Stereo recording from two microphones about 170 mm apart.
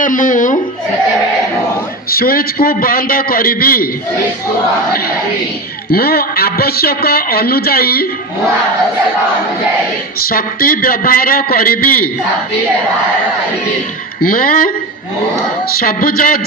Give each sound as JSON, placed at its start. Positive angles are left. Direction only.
{"t": 0.0, "sound": "speech", "side_deg": 50}
{"t": 2.0, "sound": "a man's voice", "side_deg": 60}
{"t": 5.9, "sound": "a man's voice", "side_deg": 65}
{"t": 10.2, "sound": "a man's voice", "side_deg": 60}
{"t": 14.2, "sound": "a man's voice", "side_deg": 60}
{"t": 15.8, "sound": "a man's voice", "side_deg": 60}